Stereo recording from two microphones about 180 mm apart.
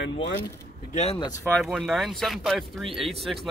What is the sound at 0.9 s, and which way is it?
Speech, 35° left (ahead or behind).